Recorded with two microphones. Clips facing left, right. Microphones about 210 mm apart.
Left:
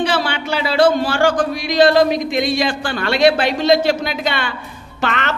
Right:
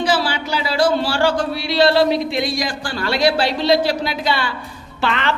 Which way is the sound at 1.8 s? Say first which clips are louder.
Left 2 dB; 50° left (ahead or behind).